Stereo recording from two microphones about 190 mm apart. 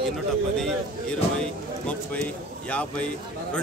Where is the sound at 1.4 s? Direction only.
5° left (ahead or behind).